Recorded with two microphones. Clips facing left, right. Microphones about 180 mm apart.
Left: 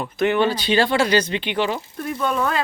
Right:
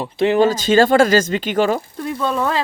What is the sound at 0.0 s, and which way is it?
Speech, 30° right (ahead or behind).